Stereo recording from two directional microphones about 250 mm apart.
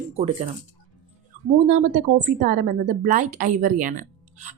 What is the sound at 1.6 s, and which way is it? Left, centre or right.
Speech, right.